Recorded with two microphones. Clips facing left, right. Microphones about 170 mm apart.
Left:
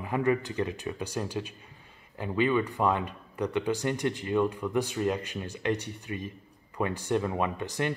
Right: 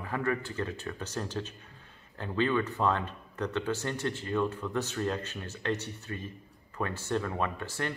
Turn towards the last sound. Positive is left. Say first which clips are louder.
# left 4 dB
turn(degrees=15)  # may be behind; listen again after turning